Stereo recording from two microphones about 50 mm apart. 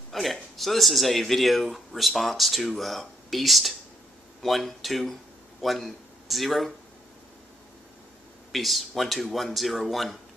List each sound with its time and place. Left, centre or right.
0.1 s speech: centre
8.5 s speech: centre